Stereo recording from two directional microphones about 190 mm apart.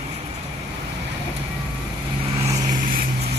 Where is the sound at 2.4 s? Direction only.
35° right (ahead or behind).